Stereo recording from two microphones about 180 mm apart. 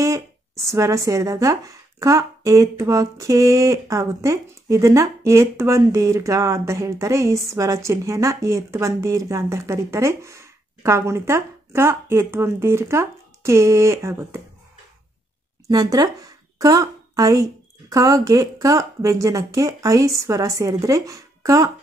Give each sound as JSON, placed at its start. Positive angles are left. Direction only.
{"t": 0.0, "sound": "speech", "side_deg": -15}
{"t": 15.7, "sound": "a woman's voice", "side_deg": -20}